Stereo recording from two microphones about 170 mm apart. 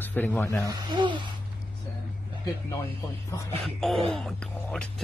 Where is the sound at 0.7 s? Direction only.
25° right (ahead or behind).